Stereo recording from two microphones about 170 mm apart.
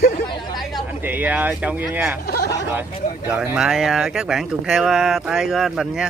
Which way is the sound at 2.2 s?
70° left (ahead or behind).